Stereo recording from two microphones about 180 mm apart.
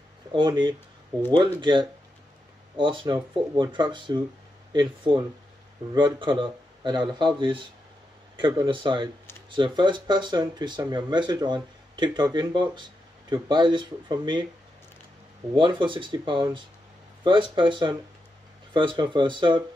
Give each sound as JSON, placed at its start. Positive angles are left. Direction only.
{"t": 0.3, "sound": "speech", "side_deg": -25}
{"t": 15.5, "sound": "speech", "side_deg": -25}